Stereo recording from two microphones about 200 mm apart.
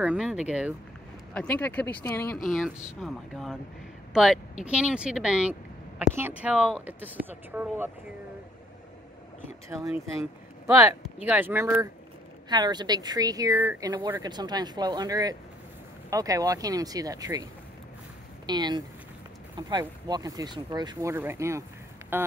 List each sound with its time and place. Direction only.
0.0 s speech: 5° right (ahead or behind)
1.3 s speech: 5° left (ahead or behind); by 7.9 s 10° right (ahead or behind)
11.0 s speech: 5° right (ahead or behind)
18.5 s speech: 20° right (ahead or behind)